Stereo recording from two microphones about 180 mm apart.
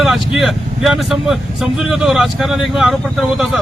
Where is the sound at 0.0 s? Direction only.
Centre (ahead or behind).